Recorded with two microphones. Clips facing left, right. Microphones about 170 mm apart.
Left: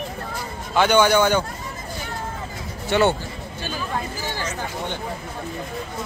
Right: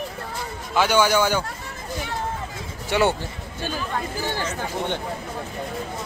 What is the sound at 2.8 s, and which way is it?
Speech, 10° right (ahead or behind).